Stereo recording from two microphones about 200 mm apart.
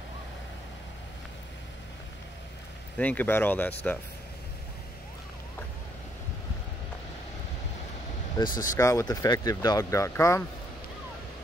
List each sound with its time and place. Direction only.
3.0 s speech: 10° left (ahead or behind)
8.4 s speech: 20° left (ahead or behind)